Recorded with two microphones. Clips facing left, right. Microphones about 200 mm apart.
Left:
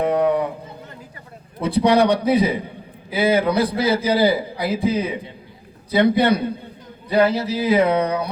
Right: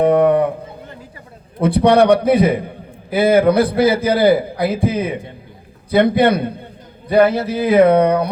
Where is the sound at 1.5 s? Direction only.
55° right (ahead or behind).